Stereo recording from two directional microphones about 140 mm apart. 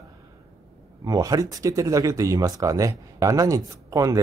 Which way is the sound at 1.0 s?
25° right (ahead or behind).